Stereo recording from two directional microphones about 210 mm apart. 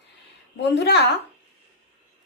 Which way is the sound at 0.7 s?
55° left (ahead or behind).